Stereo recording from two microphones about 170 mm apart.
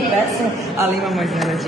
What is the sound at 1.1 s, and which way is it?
Speech, centre (ahead or behind).